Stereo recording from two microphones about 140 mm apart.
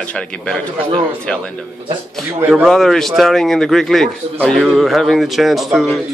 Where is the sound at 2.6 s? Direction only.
Centre (ahead or behind).